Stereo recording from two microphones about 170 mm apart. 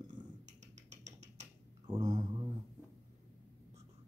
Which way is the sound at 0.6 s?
45° right (ahead or behind).